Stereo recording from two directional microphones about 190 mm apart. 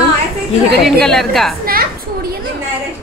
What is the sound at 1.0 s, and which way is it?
Speech, centre (ahead or behind).